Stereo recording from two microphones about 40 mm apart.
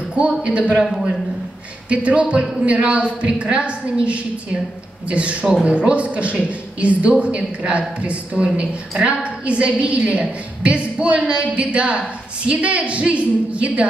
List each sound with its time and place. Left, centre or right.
0.4 s a woman's voice: right
0.7 s a man's voice: centre
1.9 s a woman's voice: right